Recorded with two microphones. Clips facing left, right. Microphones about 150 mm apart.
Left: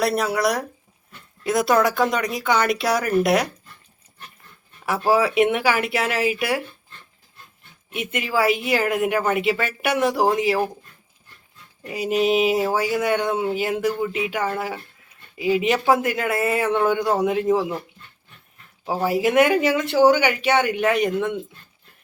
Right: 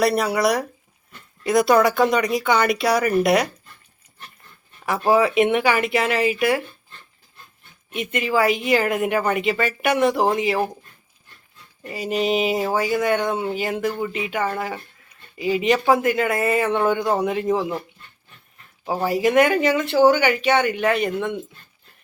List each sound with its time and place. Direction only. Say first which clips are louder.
0.0 s speech: right 2 dB; centre (ahead or behind)
5.0 s speech: right 1 dB; 5° left (ahead or behind)
7.9 s speech: right 3 dB; 5° left (ahead or behind)
11.9 s speech: left 2 dB; 5° left (ahead or behind)
19.0 s speech: even; 10° left (ahead or behind)